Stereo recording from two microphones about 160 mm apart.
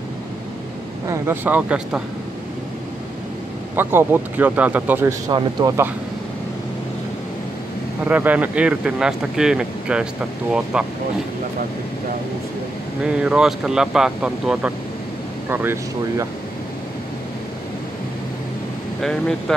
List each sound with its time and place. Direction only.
1.0 s speech: 15° right (ahead or behind)
3.7 s speech: 15° right (ahead or behind)
5.3 s speech: 25° right (ahead or behind)
8.0 s speech: 10° right (ahead or behind)
13.0 s speech: 5° right (ahead or behind)
18.9 s speech: centre (ahead or behind)